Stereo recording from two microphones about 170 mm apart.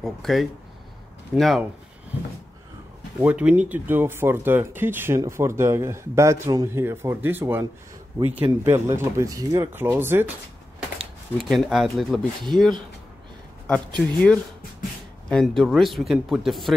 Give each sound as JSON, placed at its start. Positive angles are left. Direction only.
{"t": 0.0, "sound": "speech", "side_deg": 0}
{"t": 3.2, "sound": "speech", "side_deg": -10}
{"t": 11.3, "sound": "speech", "side_deg": 0}
{"t": 13.7, "sound": "speech", "side_deg": 5}